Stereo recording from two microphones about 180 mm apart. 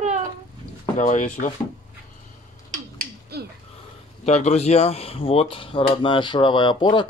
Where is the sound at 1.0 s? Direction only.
45° left (ahead or behind).